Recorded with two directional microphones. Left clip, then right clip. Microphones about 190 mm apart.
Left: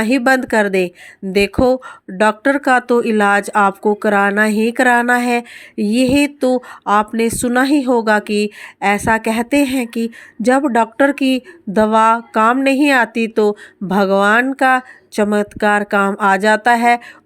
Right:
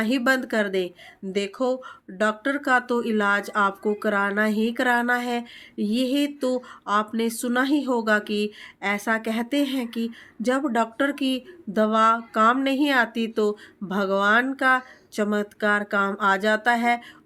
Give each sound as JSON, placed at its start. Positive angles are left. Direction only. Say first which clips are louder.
{"t": 0.0, "sound": "speech", "louder": "left 8 dB", "side_deg": 40}